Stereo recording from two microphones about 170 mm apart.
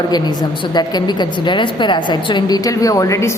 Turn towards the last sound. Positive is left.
turn(degrees=20)  # may be behind; listen again after turning